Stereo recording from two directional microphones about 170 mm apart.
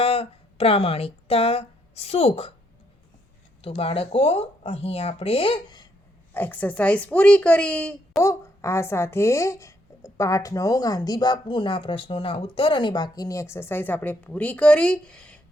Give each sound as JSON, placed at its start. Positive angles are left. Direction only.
{"t": 0.0, "sound": "speech", "side_deg": 35}
{"t": 3.6, "sound": "speech", "side_deg": 35}
{"t": 6.3, "sound": "speech", "side_deg": 10}